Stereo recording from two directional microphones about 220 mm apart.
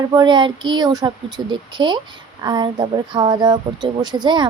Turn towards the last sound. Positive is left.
turn(degrees=-20)  # may be behind; listen again after turning